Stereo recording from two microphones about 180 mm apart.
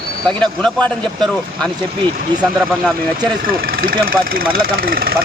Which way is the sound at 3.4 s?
50° right (ahead or behind).